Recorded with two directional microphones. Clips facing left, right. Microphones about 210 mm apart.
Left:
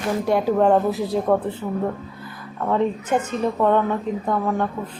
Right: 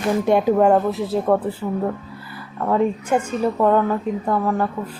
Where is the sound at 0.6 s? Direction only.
5° right (ahead or behind).